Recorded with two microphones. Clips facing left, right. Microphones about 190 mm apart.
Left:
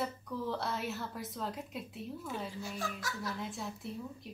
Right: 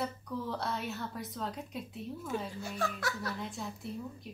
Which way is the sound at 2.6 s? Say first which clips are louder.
Right 4 dB; 65° right (ahead or behind).